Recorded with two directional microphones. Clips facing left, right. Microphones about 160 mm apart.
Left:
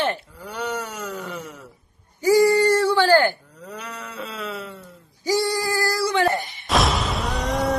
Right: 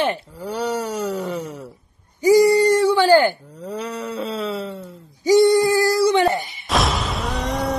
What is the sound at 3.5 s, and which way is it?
Speech, 30° right (ahead or behind).